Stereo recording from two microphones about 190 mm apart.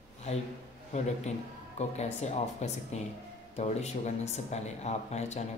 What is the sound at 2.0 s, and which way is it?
Speech, 35° left (ahead or behind).